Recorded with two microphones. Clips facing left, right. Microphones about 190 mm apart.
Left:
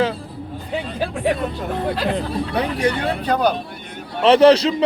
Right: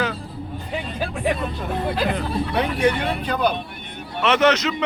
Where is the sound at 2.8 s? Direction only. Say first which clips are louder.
Left 1 dB; 40° left (ahead or behind).